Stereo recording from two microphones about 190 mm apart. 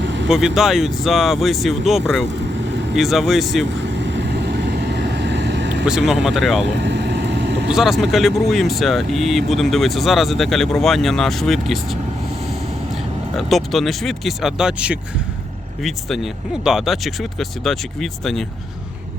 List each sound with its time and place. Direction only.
0.0 s vehicle: 70° right (ahead or behind)
0.3 s speech: centre (ahead or behind)
3.8 s vehicle: 70° right (ahead or behind)
5.8 s speech: 5° right (ahead or behind)
6.7 s vehicle: 65° right (ahead or behind)
7.7 s speech: centre (ahead or behind)
13.3 s speech: centre (ahead or behind)